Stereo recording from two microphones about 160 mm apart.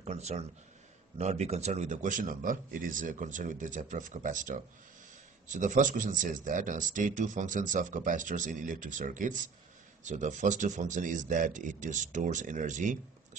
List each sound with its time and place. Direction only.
0.0 s a man's voice: 45° right (ahead or behind)